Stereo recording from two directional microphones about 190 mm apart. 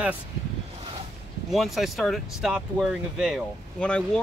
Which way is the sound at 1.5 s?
Centre (ahead or behind).